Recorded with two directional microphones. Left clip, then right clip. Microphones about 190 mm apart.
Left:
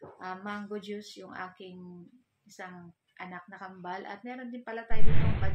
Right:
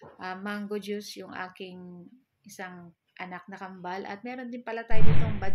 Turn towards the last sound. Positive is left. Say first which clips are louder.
# right 3 dB
turn(degrees=0)  # may be behind; listen again after turning